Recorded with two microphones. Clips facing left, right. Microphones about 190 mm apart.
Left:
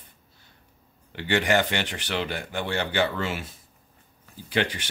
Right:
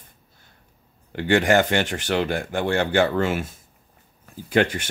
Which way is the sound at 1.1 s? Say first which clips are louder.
Right 5 dB; 45° right (ahead or behind).